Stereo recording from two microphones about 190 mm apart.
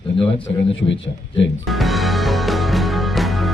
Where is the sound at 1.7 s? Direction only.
Centre (ahead or behind).